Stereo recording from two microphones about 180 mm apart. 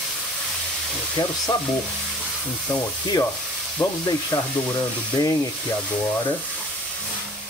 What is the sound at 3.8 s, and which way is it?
Speech, 10° left (ahead or behind).